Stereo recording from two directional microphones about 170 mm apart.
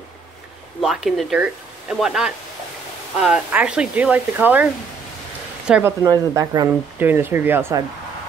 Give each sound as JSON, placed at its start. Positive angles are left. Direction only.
{"t": 0.7, "sound": "speech", "side_deg": 0}
{"t": 5.7, "sound": "speech", "side_deg": -10}
{"t": 6.0, "sound": "speech", "side_deg": -20}
{"t": 6.7, "sound": "speech", "side_deg": -10}